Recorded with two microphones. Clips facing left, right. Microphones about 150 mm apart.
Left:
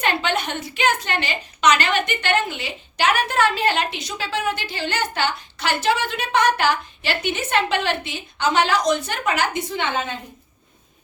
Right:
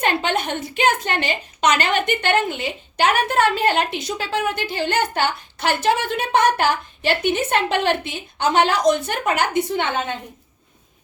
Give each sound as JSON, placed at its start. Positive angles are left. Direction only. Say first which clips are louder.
{"t": 0.0, "sound": "a woman's voice", "louder": "right 2 dB", "side_deg": -50}